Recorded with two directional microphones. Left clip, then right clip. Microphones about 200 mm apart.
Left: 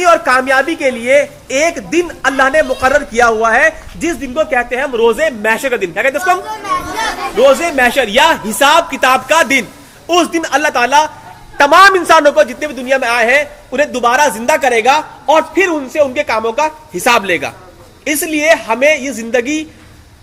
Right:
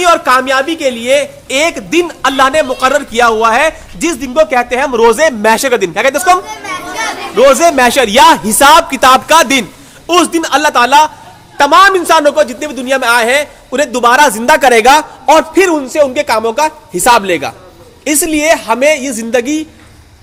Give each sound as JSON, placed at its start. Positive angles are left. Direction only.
{"t": 0.0, "sound": "a woman's voice", "side_deg": -15}
{"t": 10.3, "sound": "a man's voice", "side_deg": -20}
{"t": 11.5, "sound": "a woman's voice", "side_deg": -10}
{"t": 12.7, "sound": "a man's voice", "side_deg": -30}
{"t": 16.1, "sound": "a man's voice", "side_deg": -30}